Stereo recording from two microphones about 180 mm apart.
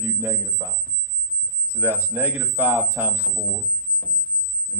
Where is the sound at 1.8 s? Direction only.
10° right (ahead or behind).